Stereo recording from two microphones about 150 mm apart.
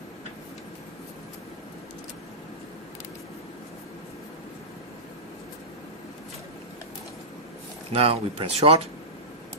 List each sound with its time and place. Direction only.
7.9 s speech: 40° right (ahead or behind)